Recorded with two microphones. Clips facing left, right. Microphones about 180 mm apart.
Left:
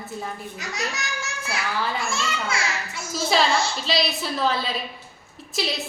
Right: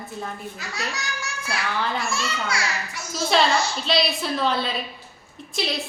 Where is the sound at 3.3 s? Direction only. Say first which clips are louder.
Right 1 dB; centre (ahead or behind).